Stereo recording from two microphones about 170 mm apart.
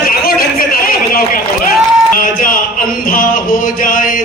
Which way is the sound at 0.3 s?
60° left (ahead or behind).